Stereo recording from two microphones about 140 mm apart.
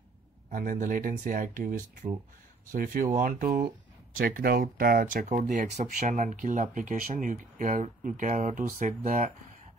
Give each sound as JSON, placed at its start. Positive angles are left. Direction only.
{"t": 0.5, "sound": "speech", "side_deg": -65}
{"t": 5.3, "sound": "speech", "side_deg": -60}